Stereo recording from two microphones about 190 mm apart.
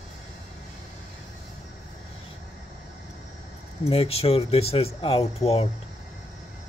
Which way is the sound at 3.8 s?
30° left (ahead or behind).